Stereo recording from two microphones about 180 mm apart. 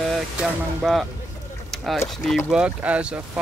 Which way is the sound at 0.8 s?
Centre (ahead or behind).